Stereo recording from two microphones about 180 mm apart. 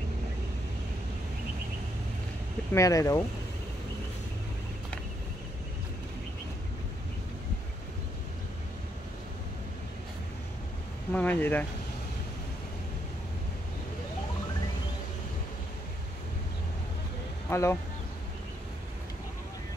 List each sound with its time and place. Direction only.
2.7 s speech: 15° left (ahead or behind)
11.1 s speech: 10° left (ahead or behind)
17.5 s speech: 15° left (ahead or behind)